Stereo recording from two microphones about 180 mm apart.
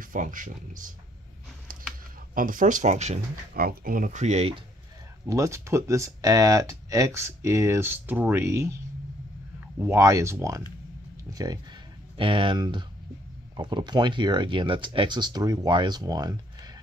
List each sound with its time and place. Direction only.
0.0 s speech: 45° right (ahead or behind)
2.3 s speech: 50° right (ahead or behind)
3.5 s speech: 55° right (ahead or behind); by 4.6 s 35° right (ahead or behind)
5.2 s speech: 15° right (ahead or behind)
9.8 s speech: 15° right (ahead or behind)
12.2 s speech: 30° right (ahead or behind)